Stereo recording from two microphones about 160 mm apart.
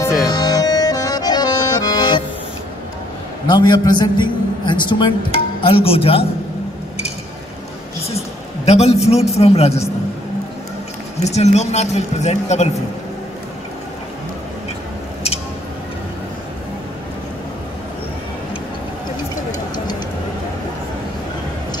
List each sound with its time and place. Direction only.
0.2 s accordion: 25° left (ahead or behind)
3.4 s a man's voice: 25° left (ahead or behind)
8.6 s speech: 40° left (ahead or behind)
11.1 s speech: 45° left (ahead or behind)